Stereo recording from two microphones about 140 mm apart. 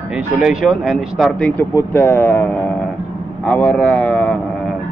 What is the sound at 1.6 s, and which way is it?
Speech, 15° left (ahead or behind).